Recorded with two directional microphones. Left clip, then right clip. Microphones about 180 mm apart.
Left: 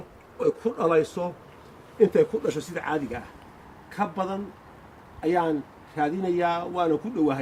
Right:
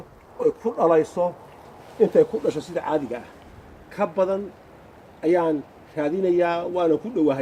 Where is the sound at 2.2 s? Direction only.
25° left (ahead or behind).